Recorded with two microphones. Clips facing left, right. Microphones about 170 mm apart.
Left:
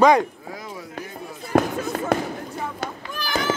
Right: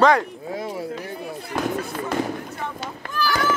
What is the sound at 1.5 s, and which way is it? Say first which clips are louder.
Fireworks: left 7 dB; 55° left (ahead or behind).